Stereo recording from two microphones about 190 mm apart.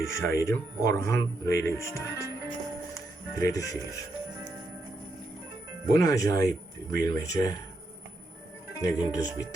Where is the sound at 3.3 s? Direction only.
15° left (ahead or behind).